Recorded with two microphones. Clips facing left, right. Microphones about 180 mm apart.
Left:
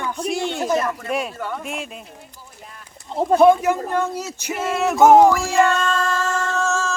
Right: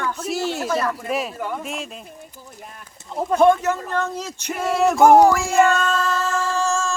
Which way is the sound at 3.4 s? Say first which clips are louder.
Left 1 dB; 10° left (ahead or behind).